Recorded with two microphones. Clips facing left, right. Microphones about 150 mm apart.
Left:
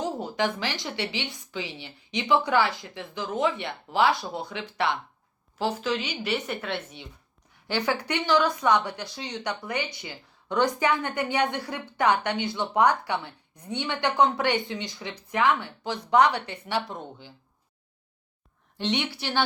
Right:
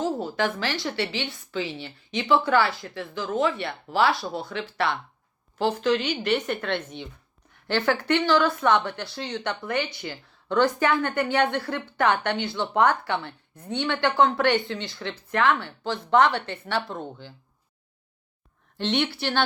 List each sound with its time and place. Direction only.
0.0 s speech: 15° left (ahead or behind)
18.8 s speech: 15° left (ahead or behind)